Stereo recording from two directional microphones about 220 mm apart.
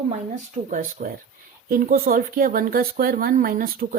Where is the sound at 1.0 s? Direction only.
35° right (ahead or behind).